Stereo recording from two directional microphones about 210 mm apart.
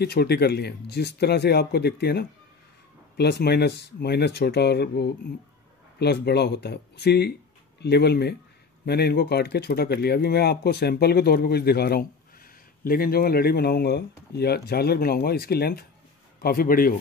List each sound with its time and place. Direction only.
0.0 s speech: 50° left (ahead or behind)